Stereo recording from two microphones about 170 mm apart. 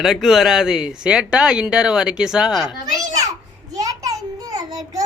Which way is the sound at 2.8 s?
20° right (ahead or behind).